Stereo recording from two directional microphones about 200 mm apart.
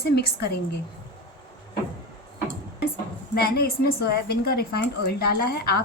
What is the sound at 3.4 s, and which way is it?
A woman's voice, 50° left (ahead or behind).